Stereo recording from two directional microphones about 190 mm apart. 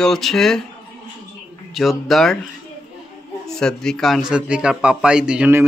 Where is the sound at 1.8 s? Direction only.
Centre (ahead or behind).